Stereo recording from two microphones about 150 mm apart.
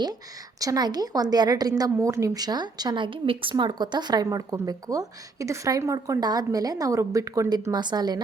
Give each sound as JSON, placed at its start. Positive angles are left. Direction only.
{"t": 0.6, "sound": "a woman's voice", "side_deg": -25}